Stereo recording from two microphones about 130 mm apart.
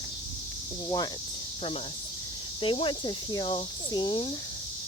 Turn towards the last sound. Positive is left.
turn(degrees=40)  # may be behind; listen again after turning